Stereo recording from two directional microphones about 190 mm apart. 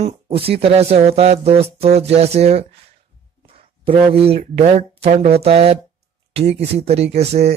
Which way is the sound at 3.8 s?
30° right (ahead or behind).